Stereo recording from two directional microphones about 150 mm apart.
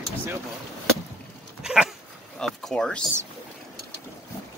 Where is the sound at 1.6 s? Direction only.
5° right (ahead or behind).